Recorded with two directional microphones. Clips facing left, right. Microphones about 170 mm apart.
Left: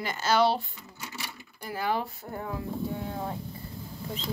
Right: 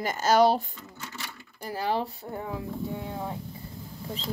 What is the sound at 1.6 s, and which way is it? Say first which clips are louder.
Speech: right 1 dB; 35° right (ahead or behind).